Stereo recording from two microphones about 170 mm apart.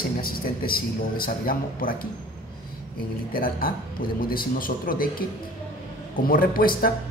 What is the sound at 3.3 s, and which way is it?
A man's voice, 60° left (ahead or behind).